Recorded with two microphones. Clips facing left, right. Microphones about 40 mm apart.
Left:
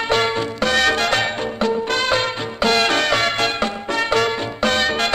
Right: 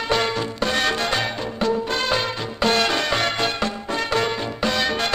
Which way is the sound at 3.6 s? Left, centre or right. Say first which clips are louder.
Left 3 dB; left.